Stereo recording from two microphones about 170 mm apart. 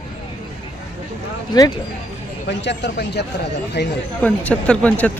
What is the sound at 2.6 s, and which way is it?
Speech, 90° left.